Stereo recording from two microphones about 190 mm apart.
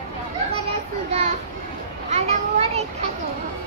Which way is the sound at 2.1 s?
35° right (ahead or behind).